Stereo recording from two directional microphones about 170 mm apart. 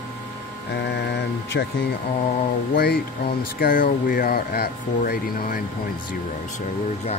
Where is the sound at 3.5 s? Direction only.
55° left (ahead or behind).